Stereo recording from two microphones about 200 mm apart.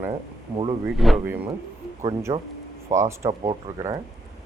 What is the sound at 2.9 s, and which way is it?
Speech, 15° right (ahead or behind).